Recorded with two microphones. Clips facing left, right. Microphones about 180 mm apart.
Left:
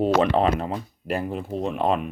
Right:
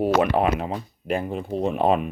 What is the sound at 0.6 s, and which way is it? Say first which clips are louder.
Speech: even; centre (ahead or behind).